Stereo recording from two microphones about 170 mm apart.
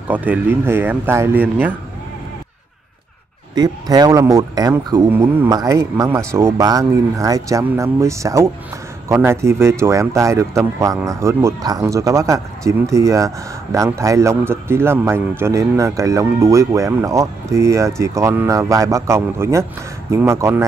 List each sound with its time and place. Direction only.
0.1 s speech: 10° right (ahead or behind)
3.5 s speech: 25° right (ahead or behind)